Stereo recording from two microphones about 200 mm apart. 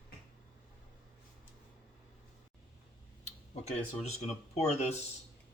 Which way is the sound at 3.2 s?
35° left (ahead or behind).